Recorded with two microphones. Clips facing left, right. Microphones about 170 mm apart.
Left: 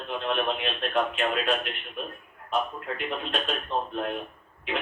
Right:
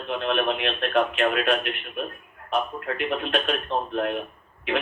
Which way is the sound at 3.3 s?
70° right (ahead or behind).